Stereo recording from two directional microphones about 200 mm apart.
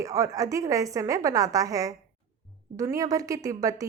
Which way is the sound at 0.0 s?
15° right (ahead or behind).